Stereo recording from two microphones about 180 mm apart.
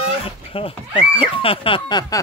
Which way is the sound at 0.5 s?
30° left (ahead or behind).